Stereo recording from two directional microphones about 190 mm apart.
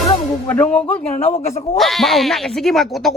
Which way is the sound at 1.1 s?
35° left (ahead or behind).